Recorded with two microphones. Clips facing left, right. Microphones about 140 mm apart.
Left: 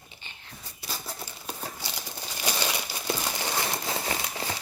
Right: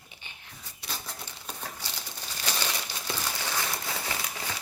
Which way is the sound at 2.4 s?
15° left (ahead or behind).